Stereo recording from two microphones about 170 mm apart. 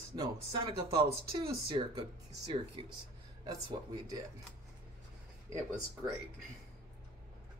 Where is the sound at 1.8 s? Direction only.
35° right (ahead or behind).